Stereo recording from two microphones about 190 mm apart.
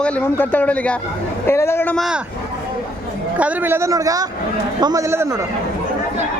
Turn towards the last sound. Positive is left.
turn(degrees=-15)  # may be behind; listen again after turning